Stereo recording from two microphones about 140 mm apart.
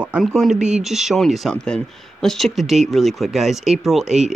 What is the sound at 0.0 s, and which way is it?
Speech, 5° right (ahead or behind).